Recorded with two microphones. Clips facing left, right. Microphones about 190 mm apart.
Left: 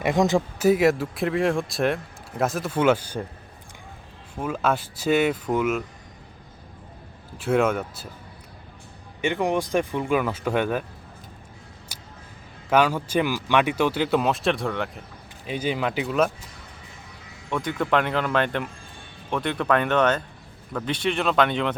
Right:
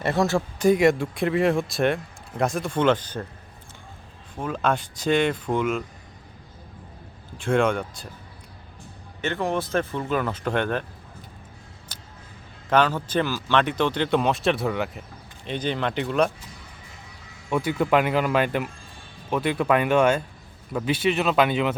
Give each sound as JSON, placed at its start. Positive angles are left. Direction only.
{"t": 0.0, "sound": "speech", "side_deg": 15}
{"t": 0.6, "sound": "speech", "side_deg": 5}
{"t": 4.4, "sound": "speech", "side_deg": 5}
{"t": 7.3, "sound": "speech", "side_deg": 5}
{"t": 9.2, "sound": "speech", "side_deg": 15}
{"t": 11.9, "sound": "music", "side_deg": 10}
{"t": 12.7, "sound": "speech", "side_deg": 10}
{"t": 15.4, "sound": "speech", "side_deg": 5}
{"t": 17.5, "sound": "speech", "side_deg": -5}